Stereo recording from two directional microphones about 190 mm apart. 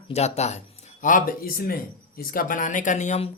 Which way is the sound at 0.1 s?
35° left (ahead or behind).